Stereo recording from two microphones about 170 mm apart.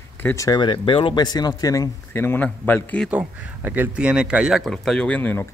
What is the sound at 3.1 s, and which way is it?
Speech, 10° right (ahead or behind).